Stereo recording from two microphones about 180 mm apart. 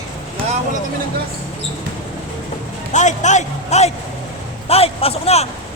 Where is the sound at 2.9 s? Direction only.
40° left (ahead or behind).